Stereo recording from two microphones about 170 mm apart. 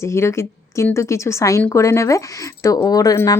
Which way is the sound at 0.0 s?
15° left (ahead or behind).